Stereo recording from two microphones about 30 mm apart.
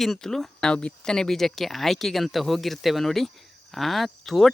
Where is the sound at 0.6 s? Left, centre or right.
Left.